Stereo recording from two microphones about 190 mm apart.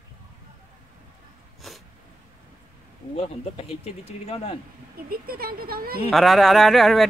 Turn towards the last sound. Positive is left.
turn(degrees=0)  # may be behind; listen again after turning